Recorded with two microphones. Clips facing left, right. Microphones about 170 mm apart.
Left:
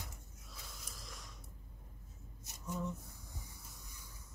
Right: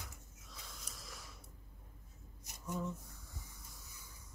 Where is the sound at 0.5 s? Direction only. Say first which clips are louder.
Even; centre (ahead or behind).